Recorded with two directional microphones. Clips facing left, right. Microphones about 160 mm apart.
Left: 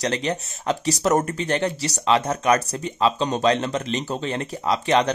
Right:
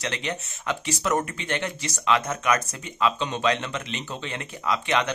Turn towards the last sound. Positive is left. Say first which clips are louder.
# left 5 dB
turn(degrees=35)  # may be behind; listen again after turning